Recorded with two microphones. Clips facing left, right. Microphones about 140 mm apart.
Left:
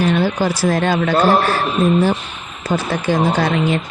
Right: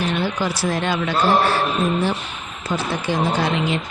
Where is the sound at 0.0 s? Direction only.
40° left (ahead or behind).